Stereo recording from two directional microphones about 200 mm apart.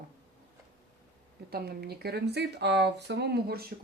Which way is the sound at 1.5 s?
50° right (ahead or behind).